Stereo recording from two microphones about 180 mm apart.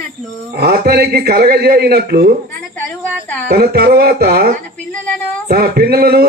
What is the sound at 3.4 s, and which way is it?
Speech, 60° right (ahead or behind).